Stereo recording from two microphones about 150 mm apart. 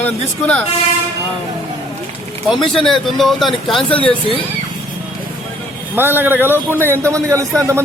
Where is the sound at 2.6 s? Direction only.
5° left (ahead or behind).